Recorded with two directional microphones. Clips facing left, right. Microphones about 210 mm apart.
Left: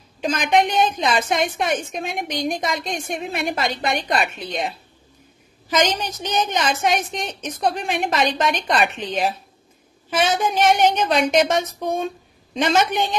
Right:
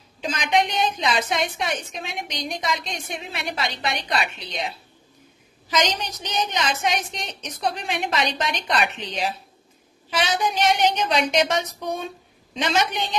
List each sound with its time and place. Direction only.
0.2 s a woman's voice: 50° left (ahead or behind)